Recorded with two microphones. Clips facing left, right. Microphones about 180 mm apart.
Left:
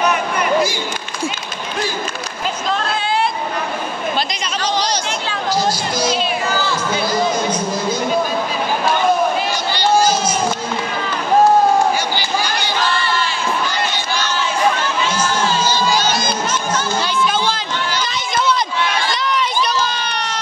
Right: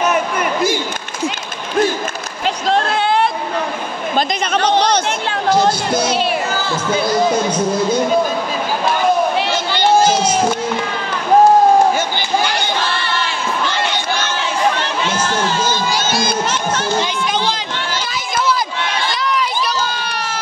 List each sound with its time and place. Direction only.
2.4 s a sound: 70° right (ahead or behind)
4.5 s chatter: 60° right (ahead or behind)
15.6 s crowd: 50° right (ahead or behind)